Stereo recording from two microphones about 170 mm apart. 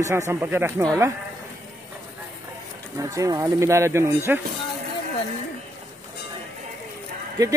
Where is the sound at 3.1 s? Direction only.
20° right (ahead or behind).